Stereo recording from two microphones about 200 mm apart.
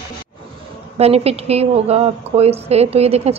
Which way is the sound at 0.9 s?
30° right (ahead or behind).